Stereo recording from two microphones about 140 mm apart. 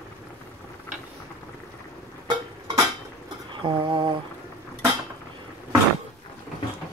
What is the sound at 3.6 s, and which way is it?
Mantra, 35° right (ahead or behind).